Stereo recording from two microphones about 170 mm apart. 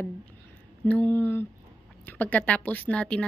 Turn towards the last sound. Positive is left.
turn(degrees=5)  # may be behind; listen again after turning